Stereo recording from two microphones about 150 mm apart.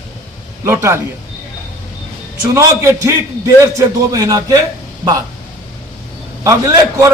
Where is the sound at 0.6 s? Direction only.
20° right (ahead or behind).